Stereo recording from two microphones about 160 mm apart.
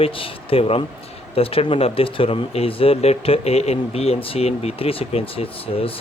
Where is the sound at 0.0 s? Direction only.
35° left (ahead or behind).